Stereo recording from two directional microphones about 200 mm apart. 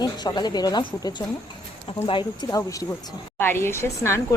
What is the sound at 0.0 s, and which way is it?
A woman's voice, 20° left (ahead or behind).